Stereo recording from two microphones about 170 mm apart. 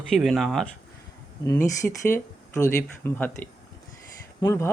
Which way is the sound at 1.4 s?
20° left (ahead or behind).